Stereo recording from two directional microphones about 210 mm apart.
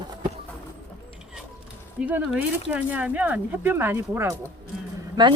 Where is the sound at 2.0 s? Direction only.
5° right (ahead or behind).